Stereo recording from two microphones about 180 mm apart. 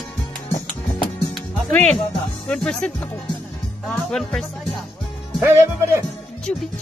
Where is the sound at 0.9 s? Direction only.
5° left (ahead or behind).